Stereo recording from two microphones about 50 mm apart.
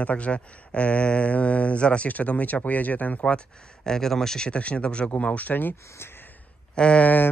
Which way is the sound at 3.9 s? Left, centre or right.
Centre.